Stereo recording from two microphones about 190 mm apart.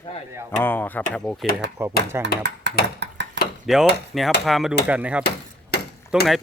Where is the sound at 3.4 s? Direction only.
65° right (ahead or behind).